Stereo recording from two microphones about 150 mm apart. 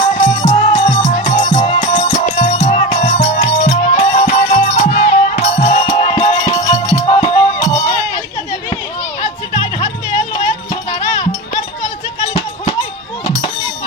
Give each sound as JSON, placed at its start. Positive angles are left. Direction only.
{"t": 0.2, "sound": "music", "side_deg": 55}
{"t": 9.6, "sound": "music", "side_deg": 20}
{"t": 13.2, "sound": "a sound", "side_deg": 30}